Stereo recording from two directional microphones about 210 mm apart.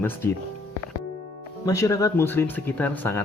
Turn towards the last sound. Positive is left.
turn(degrees=10)  # may be behind; listen again after turning